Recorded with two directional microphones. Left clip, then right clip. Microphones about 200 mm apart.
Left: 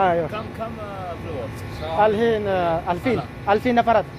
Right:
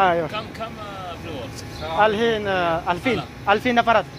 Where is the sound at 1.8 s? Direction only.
15° right (ahead or behind).